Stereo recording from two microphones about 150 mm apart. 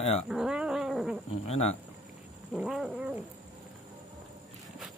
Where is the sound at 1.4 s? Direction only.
45° left (ahead or behind).